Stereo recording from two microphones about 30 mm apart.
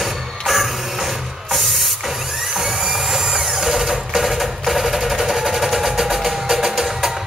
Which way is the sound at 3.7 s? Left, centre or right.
Centre.